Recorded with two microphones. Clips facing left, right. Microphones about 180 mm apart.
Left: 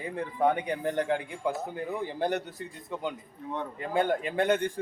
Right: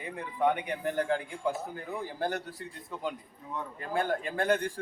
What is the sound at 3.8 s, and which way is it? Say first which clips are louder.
Speech: left 3 dB; 20° left (ahead or behind).